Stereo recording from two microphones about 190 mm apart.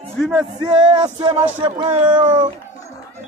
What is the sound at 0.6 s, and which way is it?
Music, 20° right (ahead or behind).